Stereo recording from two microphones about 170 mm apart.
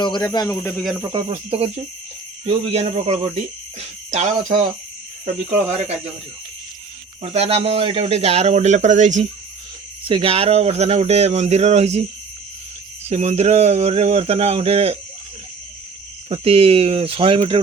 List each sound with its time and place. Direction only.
0.0 s speech: 25° left (ahead or behind)
0.9 s speech: 25° right (ahead or behind); by 6.0 s 40° right (ahead or behind)
7.2 s speech: 35° right (ahead or behind)
10.0 s speech: 30° right (ahead or behind)
13.1 s speech: 40° right (ahead or behind)
16.3 s speech: 35° right (ahead or behind)